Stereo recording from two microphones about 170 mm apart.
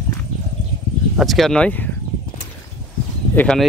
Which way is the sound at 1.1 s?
Centre (ahead or behind).